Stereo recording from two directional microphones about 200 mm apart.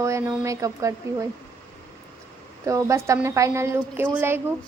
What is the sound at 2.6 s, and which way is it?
A woman's voice, 15° right (ahead or behind).